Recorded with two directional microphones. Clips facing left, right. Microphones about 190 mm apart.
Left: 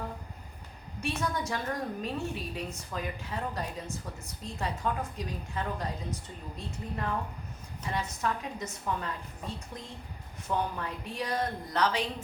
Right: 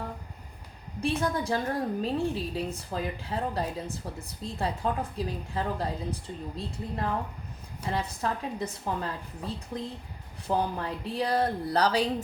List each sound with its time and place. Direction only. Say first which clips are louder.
1.0 s a woman's voice: right 5 dB; 30° right (ahead or behind)